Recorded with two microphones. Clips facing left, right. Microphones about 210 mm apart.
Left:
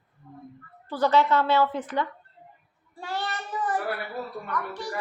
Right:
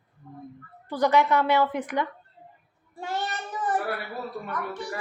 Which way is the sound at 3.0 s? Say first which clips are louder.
Right 1 dB; 20° right (ahead or behind).